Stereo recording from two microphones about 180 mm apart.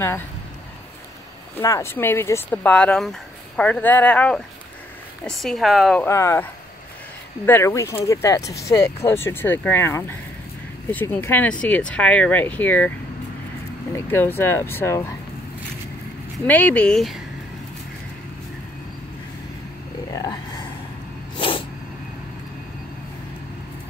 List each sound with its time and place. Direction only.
1.6 s speech: 15° left (ahead or behind)
6.0 s speech: 15° left (ahead or behind)
13.9 s speech: 15° left (ahead or behind)
16.4 s speech: 10° left (ahead or behind)
20.1 s a sound: 20° left (ahead or behind)